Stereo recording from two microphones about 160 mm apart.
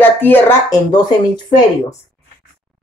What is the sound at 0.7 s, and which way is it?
Speech, 25° left (ahead or behind).